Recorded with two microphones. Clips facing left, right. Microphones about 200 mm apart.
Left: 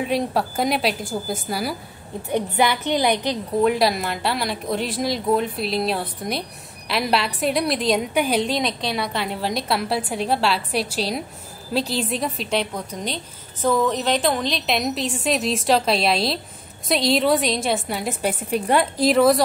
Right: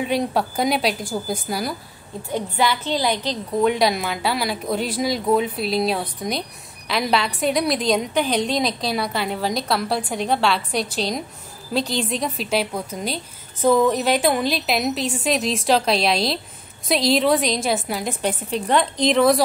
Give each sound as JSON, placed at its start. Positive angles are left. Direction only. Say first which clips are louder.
{"t": 0.0, "sound": "a woman's voice", "louder": "right 1 dB", "side_deg": 0}
{"t": 2.3, "sound": "a woman's voice", "louder": "left 2 dB", "side_deg": 15}
{"t": 3.6, "sound": "a woman's voice", "louder": "right 1 dB", "side_deg": 0}